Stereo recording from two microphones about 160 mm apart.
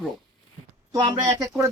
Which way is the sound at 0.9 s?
25° right (ahead or behind).